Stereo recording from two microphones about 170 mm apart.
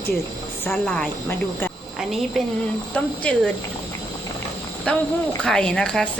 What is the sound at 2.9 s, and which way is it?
Speech, 5° left (ahead or behind).